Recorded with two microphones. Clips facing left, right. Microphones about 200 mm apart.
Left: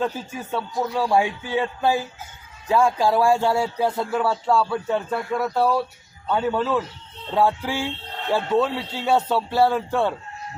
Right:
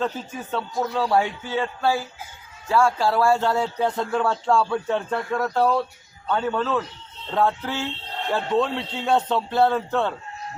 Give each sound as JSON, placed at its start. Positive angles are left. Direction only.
{"t": 0.5, "sound": "speech", "side_deg": 10}